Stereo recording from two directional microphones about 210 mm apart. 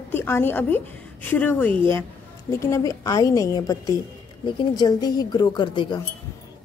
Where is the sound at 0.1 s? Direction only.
10° left (ahead or behind).